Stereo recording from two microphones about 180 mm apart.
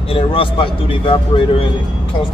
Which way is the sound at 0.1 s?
30° left (ahead or behind).